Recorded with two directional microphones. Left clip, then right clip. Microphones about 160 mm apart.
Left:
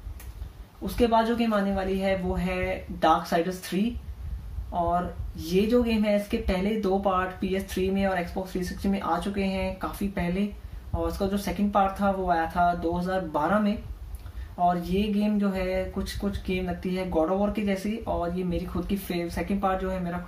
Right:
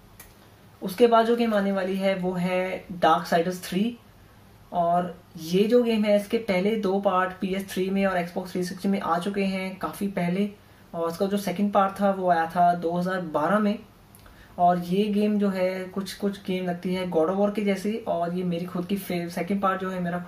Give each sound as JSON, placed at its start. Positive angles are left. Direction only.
{"t": 0.8, "sound": "speech", "side_deg": -20}
{"t": 4.7, "sound": "speech", "side_deg": -20}
{"t": 14.6, "sound": "speech", "side_deg": -20}